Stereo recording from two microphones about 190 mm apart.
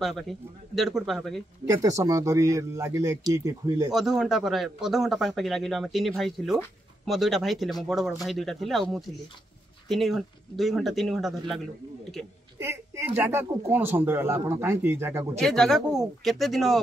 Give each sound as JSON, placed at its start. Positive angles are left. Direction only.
{"t": 0.0, "sound": "speech", "side_deg": 0}
{"t": 1.7, "sound": "speech", "side_deg": -15}
{"t": 3.9, "sound": "speech", "side_deg": -5}
{"t": 12.5, "sound": "speech", "side_deg": -15}
{"t": 15.3, "sound": "speech", "side_deg": 0}